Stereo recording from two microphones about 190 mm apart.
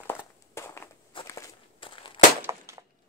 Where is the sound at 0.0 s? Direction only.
10° left (ahead or behind).